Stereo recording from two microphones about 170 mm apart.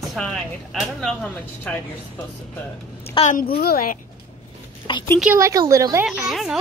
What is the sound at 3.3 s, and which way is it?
Speech, 55° left (ahead or behind).